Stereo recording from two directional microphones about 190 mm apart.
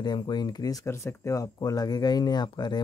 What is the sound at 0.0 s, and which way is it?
Speech, 20° left (ahead or behind).